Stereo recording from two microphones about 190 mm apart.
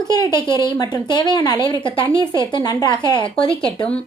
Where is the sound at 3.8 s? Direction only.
5° left (ahead or behind).